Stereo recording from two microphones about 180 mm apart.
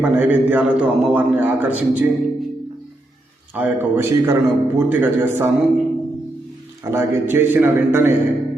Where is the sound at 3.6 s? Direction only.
10° right (ahead or behind).